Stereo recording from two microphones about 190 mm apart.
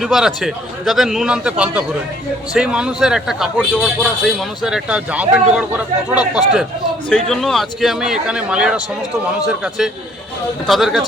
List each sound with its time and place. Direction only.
0.0 s a man's voice: centre (ahead or behind)